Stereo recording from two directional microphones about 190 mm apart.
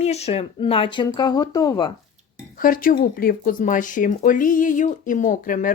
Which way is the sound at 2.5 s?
45° left (ahead or behind).